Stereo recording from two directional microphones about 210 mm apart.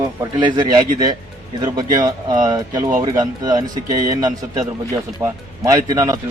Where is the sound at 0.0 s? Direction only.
20° right (ahead or behind).